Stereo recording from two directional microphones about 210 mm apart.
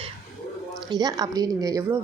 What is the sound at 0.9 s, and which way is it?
A woman's voice, 20° right (ahead or behind).